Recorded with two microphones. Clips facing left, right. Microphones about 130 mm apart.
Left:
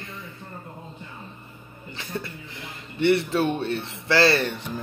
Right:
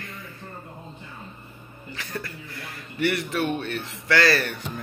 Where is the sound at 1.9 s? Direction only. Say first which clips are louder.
Left 1 dB; 25° left (ahead or behind).